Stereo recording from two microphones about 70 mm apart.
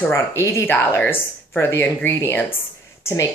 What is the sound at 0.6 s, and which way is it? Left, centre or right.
Speech, left.